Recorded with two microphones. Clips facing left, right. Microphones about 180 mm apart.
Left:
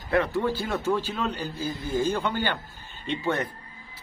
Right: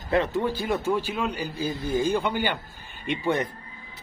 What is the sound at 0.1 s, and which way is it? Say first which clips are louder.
A man's voice: even; 20° right (ahead or behind).